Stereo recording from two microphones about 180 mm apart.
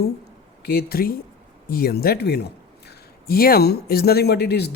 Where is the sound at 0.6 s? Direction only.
60° left (ahead or behind).